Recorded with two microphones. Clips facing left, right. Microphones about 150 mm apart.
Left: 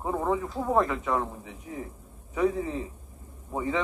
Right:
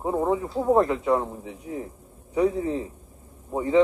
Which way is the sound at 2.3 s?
15° right (ahead or behind).